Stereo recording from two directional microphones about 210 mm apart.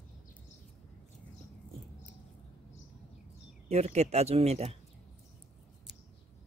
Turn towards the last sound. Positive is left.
turn(degrees=-30)  # may be behind; listen again after turning